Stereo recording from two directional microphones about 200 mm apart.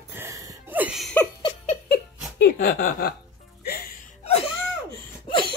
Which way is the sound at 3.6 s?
50° left (ahead or behind).